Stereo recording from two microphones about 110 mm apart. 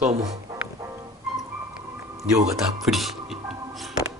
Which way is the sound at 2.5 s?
Centre (ahead or behind).